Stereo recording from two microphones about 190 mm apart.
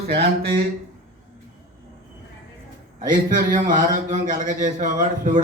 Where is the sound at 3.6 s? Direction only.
40° right (ahead or behind).